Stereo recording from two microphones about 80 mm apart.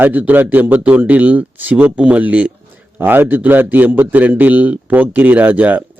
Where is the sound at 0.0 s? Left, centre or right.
Right.